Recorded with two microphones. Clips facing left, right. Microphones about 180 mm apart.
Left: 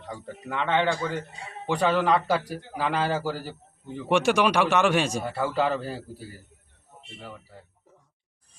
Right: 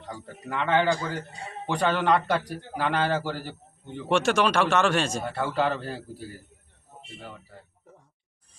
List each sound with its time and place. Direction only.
0.1 s a man's voice: centre (ahead or behind)
5.3 s a man's voice: centre (ahead or behind)